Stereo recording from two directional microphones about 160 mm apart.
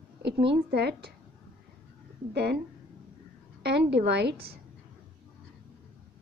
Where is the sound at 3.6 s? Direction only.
90° right.